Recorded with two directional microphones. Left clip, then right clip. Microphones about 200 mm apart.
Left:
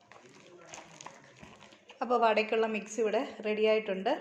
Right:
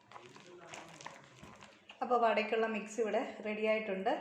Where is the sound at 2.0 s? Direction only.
40° left (ahead or behind).